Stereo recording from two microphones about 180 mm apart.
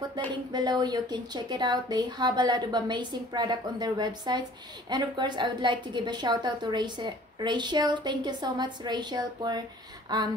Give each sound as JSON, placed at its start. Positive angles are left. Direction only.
{"t": 0.3, "sound": "a woman's voice", "side_deg": -25}